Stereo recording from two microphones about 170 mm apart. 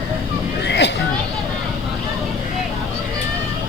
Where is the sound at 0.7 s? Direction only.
90° left.